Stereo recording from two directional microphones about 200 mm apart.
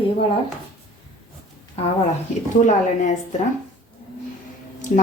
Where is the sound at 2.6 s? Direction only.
40° left (ahead or behind).